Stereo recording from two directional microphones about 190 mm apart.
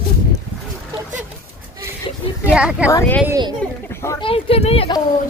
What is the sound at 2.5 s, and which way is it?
Speech, 5° right (ahead or behind).